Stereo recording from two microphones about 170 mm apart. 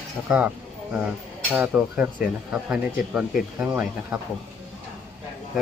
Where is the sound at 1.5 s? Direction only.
5° right (ahead or behind).